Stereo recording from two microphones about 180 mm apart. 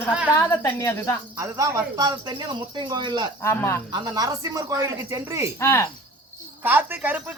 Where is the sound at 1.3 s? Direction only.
15° right (ahead or behind).